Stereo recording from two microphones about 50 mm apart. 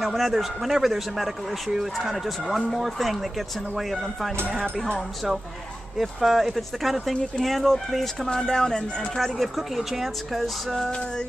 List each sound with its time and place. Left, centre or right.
0.0 s speech: centre
9.2 s speech: centre
10.9 s speech: centre